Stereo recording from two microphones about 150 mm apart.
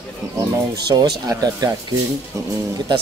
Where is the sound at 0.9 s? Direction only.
25° right (ahead or behind).